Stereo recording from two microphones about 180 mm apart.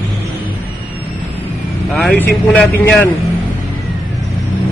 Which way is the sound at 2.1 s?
10° left (ahead or behind).